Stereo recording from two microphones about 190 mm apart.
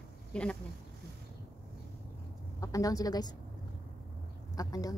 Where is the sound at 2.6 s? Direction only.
15° left (ahead or behind).